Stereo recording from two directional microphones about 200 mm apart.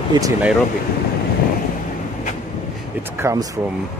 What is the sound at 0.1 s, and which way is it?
Speech, 20° right (ahead or behind).